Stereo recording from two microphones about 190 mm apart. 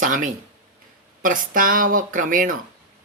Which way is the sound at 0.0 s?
45° right (ahead or behind).